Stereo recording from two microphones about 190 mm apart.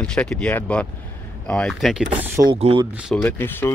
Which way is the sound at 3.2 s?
10° left (ahead or behind).